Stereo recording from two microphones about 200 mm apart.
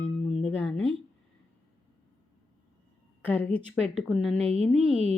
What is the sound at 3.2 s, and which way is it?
A woman's voice, 10° left (ahead or behind).